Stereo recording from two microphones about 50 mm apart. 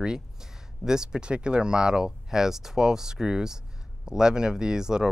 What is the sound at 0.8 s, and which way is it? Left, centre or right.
Speech, centre.